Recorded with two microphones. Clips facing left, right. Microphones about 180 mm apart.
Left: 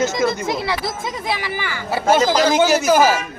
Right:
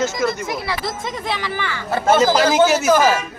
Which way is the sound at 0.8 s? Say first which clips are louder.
Even; 10° left (ahead or behind).